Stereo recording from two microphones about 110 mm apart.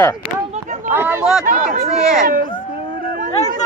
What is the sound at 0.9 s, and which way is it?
Speech, 20° right (ahead or behind).